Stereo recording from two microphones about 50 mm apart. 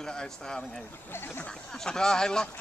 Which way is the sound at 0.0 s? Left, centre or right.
Centre.